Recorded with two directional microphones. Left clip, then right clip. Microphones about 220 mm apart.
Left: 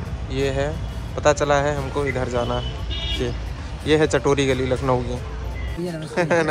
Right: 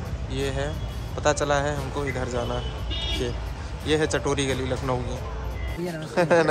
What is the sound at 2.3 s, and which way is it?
Speech, 5° left (ahead or behind).